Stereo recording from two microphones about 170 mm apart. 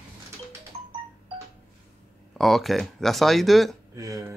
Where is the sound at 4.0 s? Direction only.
20° right (ahead or behind).